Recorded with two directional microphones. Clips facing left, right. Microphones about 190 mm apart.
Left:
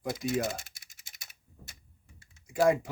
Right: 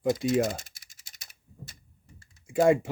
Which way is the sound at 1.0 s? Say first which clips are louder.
Even; centre (ahead or behind).